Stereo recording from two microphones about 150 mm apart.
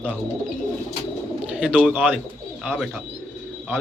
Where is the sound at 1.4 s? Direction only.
5° right (ahead or behind).